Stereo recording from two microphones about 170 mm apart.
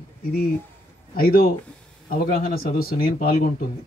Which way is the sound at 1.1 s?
60° left (ahead or behind).